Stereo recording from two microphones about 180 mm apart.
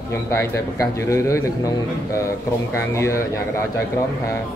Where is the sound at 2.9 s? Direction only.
15° left (ahead or behind).